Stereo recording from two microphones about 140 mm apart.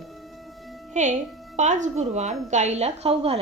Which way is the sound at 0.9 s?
60° right (ahead or behind).